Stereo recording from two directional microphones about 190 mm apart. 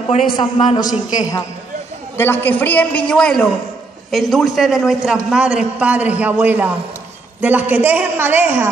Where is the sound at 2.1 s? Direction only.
10° left (ahead or behind).